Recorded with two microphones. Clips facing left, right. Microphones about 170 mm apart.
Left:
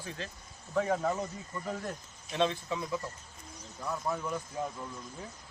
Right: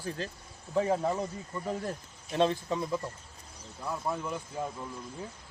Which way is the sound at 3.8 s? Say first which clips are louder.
Right 1 dB; 10° right (ahead or behind).